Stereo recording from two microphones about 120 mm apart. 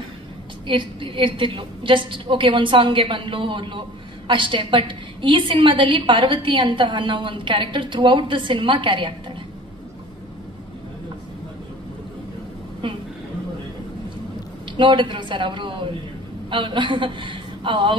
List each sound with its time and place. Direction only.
0.7 s a woman's voice: 45° right (ahead or behind)
12.8 s a sound: 45° right (ahead or behind)
14.8 s a woman's voice: 45° right (ahead or behind)